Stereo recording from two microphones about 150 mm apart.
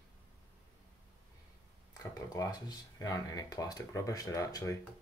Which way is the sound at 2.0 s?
25° left (ahead or behind).